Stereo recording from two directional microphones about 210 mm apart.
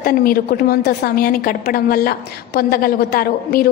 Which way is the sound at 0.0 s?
45° left (ahead or behind).